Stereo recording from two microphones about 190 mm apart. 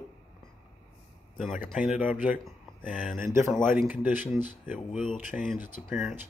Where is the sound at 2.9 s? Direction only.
45° left (ahead or behind).